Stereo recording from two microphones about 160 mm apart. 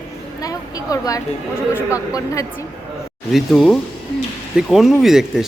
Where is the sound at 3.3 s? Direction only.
Centre (ahead or behind).